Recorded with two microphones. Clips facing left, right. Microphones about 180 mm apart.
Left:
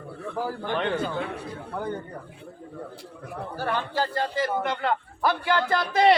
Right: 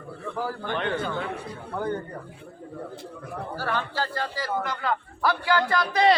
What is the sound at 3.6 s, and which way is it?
A man's voice, 20° left (ahead or behind).